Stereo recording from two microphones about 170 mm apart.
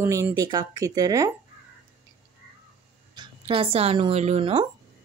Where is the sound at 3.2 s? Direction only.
30° right (ahead or behind).